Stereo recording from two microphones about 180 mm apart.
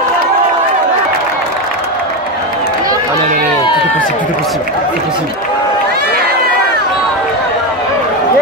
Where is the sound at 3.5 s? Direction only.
25° left (ahead or behind).